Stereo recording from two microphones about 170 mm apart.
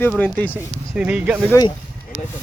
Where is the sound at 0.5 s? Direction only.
10° right (ahead or behind).